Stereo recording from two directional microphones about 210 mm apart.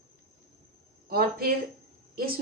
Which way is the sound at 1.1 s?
45° right (ahead or behind).